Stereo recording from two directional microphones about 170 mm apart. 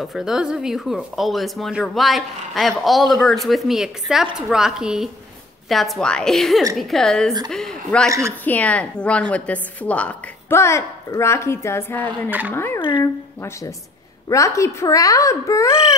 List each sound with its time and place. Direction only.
0.0 s speech: centre (ahead or behind)
8.1 s a woman's voice: 15° right (ahead or behind)
8.5 s a woman's voice: 10° left (ahead or behind)
12.3 s a woman's voice: 10° right (ahead or behind)
12.5 s speech: 15° left (ahead or behind)
12.8 s a sound: 25° left (ahead or behind)
13.4 s a woman's voice: 20° left (ahead or behind)